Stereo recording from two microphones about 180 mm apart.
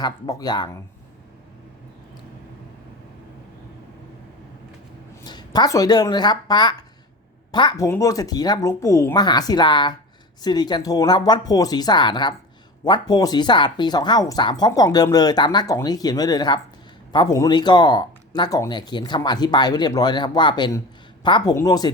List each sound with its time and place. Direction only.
0.0 s speech: 20° left (ahead or behind)
5.2 s speech: 25° left (ahead or behind)